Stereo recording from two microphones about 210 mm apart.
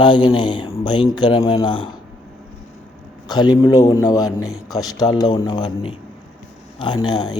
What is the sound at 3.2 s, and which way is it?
A man's voice, 20° left (ahead or behind).